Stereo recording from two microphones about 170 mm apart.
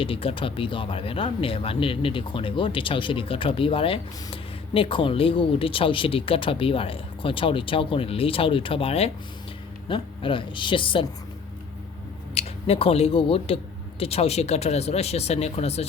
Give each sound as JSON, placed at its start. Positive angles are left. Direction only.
{"t": 0.0, "sound": "a woman's voice", "side_deg": 35}
{"t": 12.3, "sound": "speech", "side_deg": 35}